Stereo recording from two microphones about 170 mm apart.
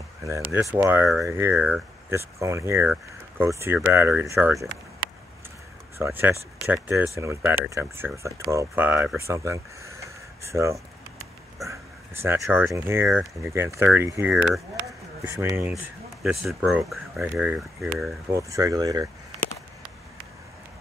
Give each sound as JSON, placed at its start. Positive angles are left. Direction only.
{"t": 0.7, "sound": "speech", "side_deg": -10}
{"t": 5.9, "sound": "speech", "side_deg": -15}
{"t": 11.6, "sound": "a sound", "side_deg": -15}
{"t": 12.7, "sound": "speech", "side_deg": -15}
{"t": 14.3, "sound": "speech", "side_deg": 0}
{"t": 15.2, "sound": "speech", "side_deg": -15}
{"t": 16.2, "sound": "speech", "side_deg": 0}
{"t": 18.3, "sound": "speech", "side_deg": -20}